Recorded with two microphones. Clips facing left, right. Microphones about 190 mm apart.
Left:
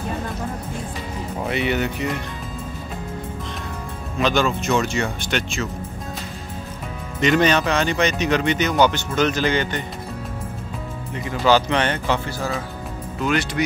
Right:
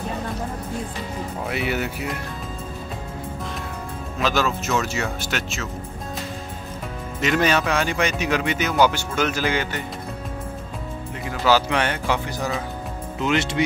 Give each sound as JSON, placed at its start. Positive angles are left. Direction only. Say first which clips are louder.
{"t": 1.4, "sound": "speech", "louder": "left 4 dB", "side_deg": -5}
{"t": 4.2, "sound": "speech", "louder": "left 3 dB", "side_deg": -5}
{"t": 7.2, "sound": "speech", "louder": "left 3 dB", "side_deg": -5}
{"t": 11.2, "sound": "speech", "louder": "left 2 dB", "side_deg": -5}
{"t": 13.2, "sound": "speech", "louder": "even", "side_deg": -25}